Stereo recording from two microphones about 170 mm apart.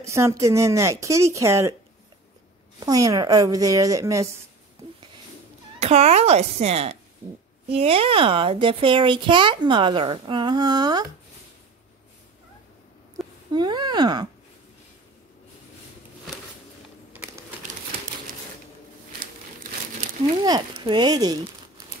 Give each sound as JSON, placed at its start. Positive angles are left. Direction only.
{"t": 0.0, "sound": "speech", "side_deg": -15}
{"t": 2.8, "sound": "speech", "side_deg": -20}
{"t": 5.8, "sound": "speech", "side_deg": -40}
{"t": 13.5, "sound": "speech", "side_deg": -25}
{"t": 17.1, "sound": "a sound", "side_deg": -10}
{"t": 20.4, "sound": "speech", "side_deg": -25}